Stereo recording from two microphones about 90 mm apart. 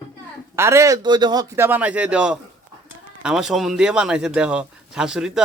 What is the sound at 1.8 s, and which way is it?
A man's voice, 15° right (ahead or behind).